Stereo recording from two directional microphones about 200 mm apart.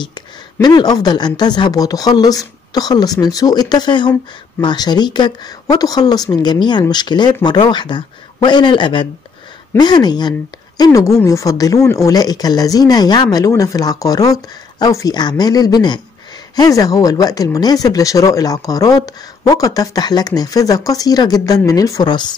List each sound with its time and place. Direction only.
0.0 s speech: 20° left (ahead or behind)